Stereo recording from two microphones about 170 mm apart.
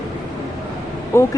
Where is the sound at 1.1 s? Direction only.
15° left (ahead or behind).